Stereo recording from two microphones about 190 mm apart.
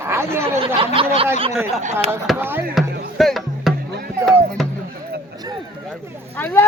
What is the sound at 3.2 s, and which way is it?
Music, centre (ahead or behind).